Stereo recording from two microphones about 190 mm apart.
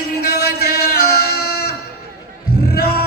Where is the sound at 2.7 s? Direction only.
55° left (ahead or behind).